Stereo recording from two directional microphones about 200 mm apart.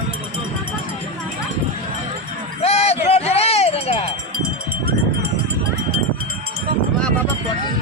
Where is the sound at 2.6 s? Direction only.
30° left (ahead or behind).